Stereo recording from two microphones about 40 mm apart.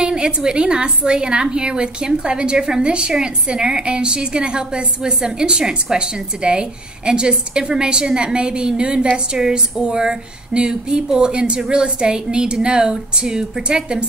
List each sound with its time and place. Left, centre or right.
0.0 s a woman's voice: right